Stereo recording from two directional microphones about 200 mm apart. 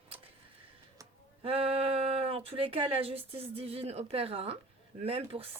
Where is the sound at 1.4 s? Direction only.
30° right (ahead or behind).